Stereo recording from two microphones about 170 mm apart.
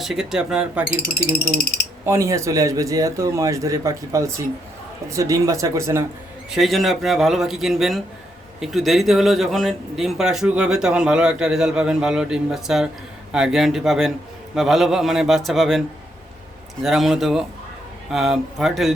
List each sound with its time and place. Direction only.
0.0 s speech: centre (ahead or behind)
2.0 s a man's voice: 15° right (ahead or behind)
6.5 s speech: centre (ahead or behind)
16.8 s speech: centre (ahead or behind)